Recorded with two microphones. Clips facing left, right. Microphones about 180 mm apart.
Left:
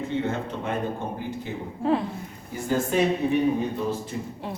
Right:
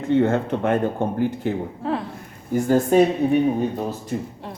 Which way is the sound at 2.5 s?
50° right (ahead or behind).